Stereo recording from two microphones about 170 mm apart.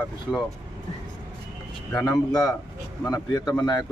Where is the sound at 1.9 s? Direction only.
20° left (ahead or behind).